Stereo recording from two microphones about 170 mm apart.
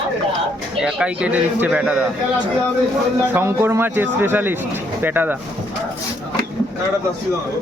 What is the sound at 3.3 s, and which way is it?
A man's voice, 15° right (ahead or behind).